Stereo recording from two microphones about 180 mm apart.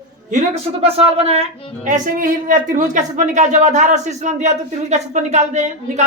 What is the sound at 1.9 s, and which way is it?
A woman's voice, 45° right (ahead or behind).